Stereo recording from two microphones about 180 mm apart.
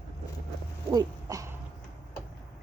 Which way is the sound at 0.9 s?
20° right (ahead or behind).